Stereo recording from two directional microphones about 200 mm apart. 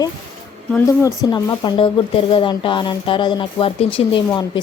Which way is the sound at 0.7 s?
15° left (ahead or behind).